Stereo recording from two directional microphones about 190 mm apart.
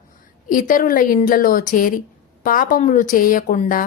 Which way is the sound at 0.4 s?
45° left (ahead or behind).